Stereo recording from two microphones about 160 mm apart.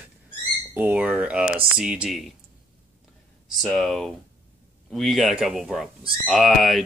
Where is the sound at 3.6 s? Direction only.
Centre (ahead or behind).